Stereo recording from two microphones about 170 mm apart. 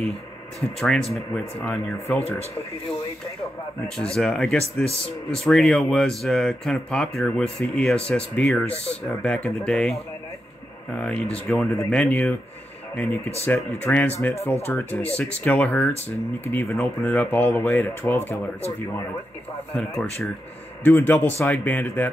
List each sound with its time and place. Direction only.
0.7 s speech: 5° left (ahead or behind)
3.8 s speech: 5° left (ahead or behind)
20.8 s speech: 10° left (ahead or behind)